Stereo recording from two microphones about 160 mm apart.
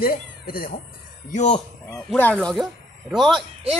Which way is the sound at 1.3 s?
45° left (ahead or behind).